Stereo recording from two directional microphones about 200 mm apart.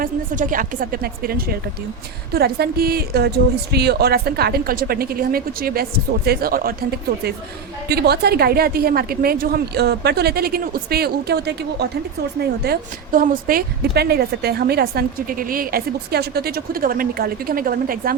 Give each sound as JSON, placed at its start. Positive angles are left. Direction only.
{"t": 0.0, "sound": "a woman's voice", "side_deg": -45}
{"t": 7.9, "sound": "a woman's voice", "side_deg": -55}